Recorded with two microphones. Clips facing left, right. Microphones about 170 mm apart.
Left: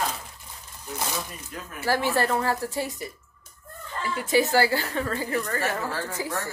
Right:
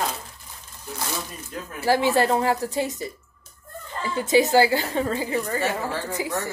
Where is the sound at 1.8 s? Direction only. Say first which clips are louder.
Right 4 dB; 20° right (ahead or behind).